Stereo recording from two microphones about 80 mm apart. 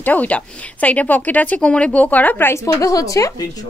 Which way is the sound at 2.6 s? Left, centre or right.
Left.